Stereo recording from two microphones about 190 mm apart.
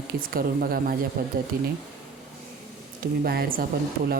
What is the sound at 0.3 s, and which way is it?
Speech, 50° right (ahead or behind).